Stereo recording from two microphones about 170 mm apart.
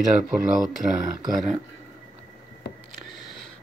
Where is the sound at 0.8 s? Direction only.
20° right (ahead or behind).